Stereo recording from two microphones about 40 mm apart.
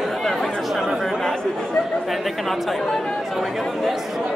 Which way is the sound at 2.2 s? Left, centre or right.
Centre.